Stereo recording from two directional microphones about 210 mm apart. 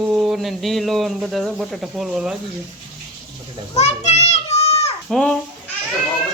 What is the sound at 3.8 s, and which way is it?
Children playing, 30° left (ahead or behind).